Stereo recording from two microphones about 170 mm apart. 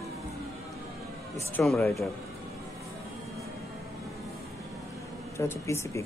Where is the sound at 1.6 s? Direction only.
Centre (ahead or behind).